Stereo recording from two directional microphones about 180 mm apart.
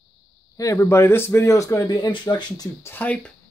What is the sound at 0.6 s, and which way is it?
Speech, 15° left (ahead or behind).